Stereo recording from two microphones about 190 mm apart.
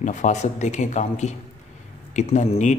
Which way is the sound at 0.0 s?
40° left (ahead or behind).